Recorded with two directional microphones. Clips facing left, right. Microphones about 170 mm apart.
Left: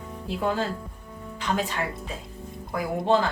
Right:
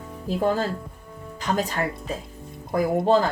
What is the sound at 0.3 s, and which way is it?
A woman's voice, 40° right (ahead or behind).